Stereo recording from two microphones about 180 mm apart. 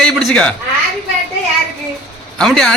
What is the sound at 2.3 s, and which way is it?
Speech, 5° left (ahead or behind).